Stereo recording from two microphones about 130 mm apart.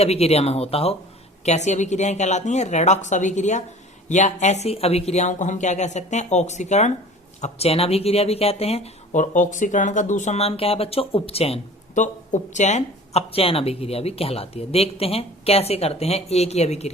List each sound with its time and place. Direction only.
0.0 s speech: 50° left (ahead or behind)
1.5 s speech: 60° left (ahead or behind)
7.4 s speech: 50° left (ahead or behind)
9.1 s speech: 75° left (ahead or behind); by 11.6 s 50° left (ahead or behind)
11.9 s speech: 70° left (ahead or behind)